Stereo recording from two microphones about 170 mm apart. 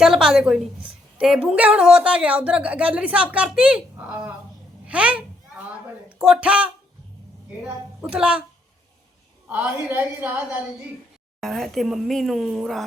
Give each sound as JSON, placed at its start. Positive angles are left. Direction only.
{"t": 0.0, "sound": "a woman's voice", "side_deg": -5}
{"t": 4.9, "sound": "a sound", "side_deg": -10}
{"t": 6.1, "sound": "a woman's voice", "side_deg": -5}
{"t": 9.5, "sound": "a woman's voice", "side_deg": -10}
{"t": 11.3, "sound": "speech", "side_deg": 0}